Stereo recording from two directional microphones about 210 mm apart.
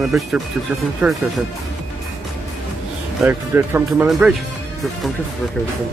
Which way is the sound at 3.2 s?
10° right (ahead or behind).